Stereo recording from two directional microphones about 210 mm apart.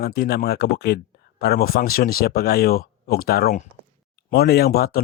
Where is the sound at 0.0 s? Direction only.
50° left (ahead or behind).